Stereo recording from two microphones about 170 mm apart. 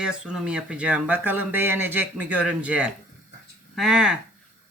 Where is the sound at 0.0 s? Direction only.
5° right (ahead or behind).